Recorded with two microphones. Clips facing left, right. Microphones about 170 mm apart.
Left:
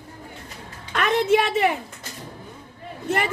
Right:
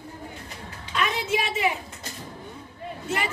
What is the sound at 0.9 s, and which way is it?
Speech, 60° left (ahead or behind).